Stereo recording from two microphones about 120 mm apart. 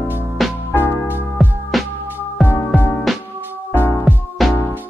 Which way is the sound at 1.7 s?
Centre (ahead or behind).